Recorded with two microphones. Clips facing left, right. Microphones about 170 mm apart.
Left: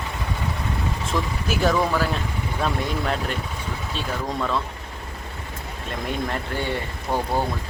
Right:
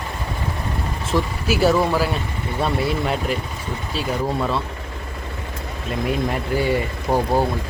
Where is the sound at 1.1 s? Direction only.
5° right (ahead or behind).